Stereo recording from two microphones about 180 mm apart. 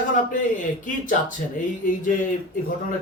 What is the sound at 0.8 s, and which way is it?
Speech, 45° left (ahead or behind).